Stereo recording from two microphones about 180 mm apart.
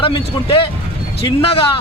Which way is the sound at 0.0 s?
30° left (ahead or behind).